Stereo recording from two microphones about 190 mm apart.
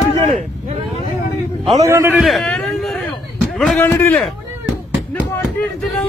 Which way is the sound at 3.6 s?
5° left (ahead or behind).